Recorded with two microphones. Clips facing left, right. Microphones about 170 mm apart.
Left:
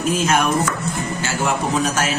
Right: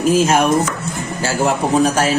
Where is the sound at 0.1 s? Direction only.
30° right (ahead or behind).